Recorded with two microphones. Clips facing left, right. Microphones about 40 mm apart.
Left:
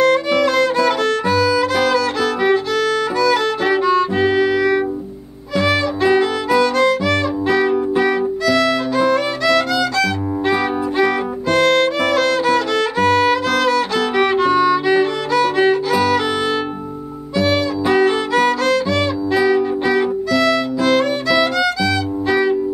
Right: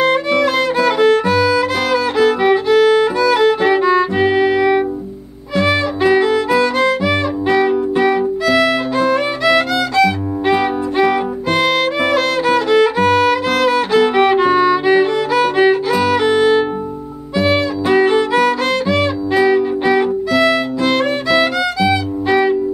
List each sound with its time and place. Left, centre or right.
0.3 s music: centre
5.6 s music: centre
9.1 s violin: centre
17.4 s music: centre
18.9 s violin: centre
19.4 s music: centre